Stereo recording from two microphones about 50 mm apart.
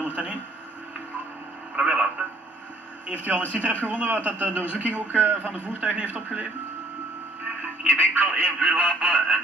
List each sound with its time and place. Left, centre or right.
0.0 s a sound: right
1.8 s radio: centre
3.1 s a man's voice: right
7.8 s a man's voice: right